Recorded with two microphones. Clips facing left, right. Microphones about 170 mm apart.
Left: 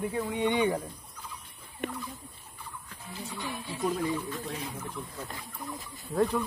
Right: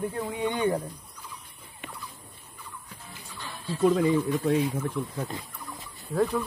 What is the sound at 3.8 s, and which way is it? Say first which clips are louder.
Speech: right 8 dB; 90° right.